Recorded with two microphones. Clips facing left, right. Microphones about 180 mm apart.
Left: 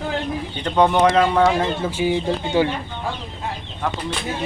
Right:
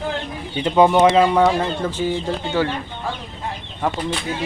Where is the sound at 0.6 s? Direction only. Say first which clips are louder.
Right 3 dB; 5° right (ahead or behind); by 2.7 s 15° left (ahead or behind).